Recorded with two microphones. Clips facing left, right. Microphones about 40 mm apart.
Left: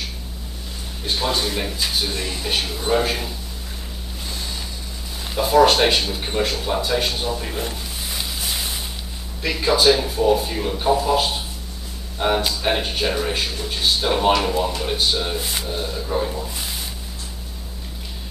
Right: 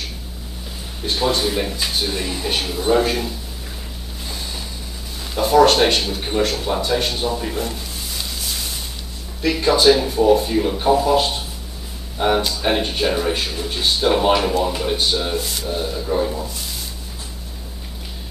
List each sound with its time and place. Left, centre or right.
1.0 s speech: centre
5.3 s speech: centre
8.1 s a sound: left
9.4 s speech: centre